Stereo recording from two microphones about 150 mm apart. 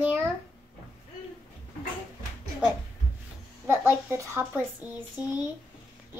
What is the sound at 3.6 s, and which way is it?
Speech, 15° right (ahead or behind).